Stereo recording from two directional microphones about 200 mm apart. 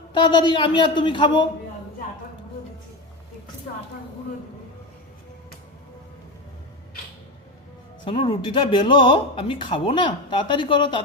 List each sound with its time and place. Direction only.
0.2 s speech: 25° left (ahead or behind)
8.0 s speech: 25° left (ahead or behind)